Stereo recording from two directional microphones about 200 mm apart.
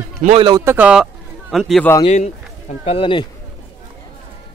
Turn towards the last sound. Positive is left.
turn(degrees=25)  # may be behind; listen again after turning